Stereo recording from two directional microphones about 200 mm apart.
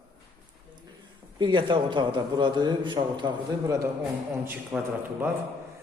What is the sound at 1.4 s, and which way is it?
A man's voice, 25° right (ahead or behind).